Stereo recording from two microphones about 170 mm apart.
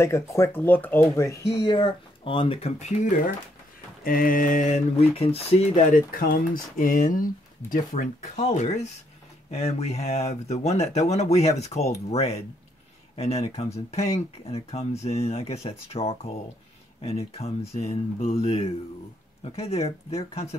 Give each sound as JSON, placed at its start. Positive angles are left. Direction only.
{"t": 0.0, "sound": "speech", "side_deg": 15}
{"t": 4.0, "sound": "speech", "side_deg": 55}
{"t": 5.9, "sound": "speech", "side_deg": 55}